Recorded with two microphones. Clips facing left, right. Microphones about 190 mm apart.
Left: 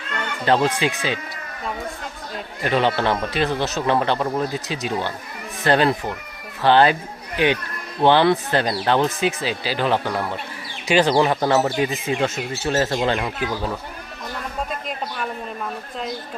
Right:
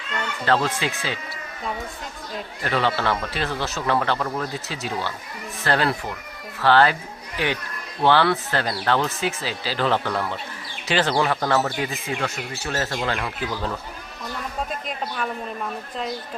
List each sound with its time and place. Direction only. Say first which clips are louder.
0.4 s speech: left 4 dB; 20° left (ahead or behind)
2.6 s speech: left 3 dB; 20° left (ahead or behind)